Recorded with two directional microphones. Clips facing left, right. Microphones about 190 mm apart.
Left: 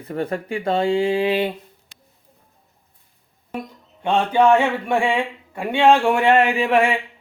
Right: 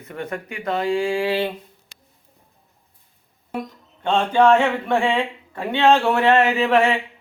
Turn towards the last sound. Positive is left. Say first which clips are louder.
# even
turn(degrees=10)  # may be behind; listen again after turning